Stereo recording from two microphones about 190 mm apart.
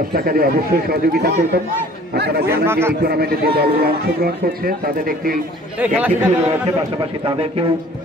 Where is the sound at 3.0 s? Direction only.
55° right (ahead or behind).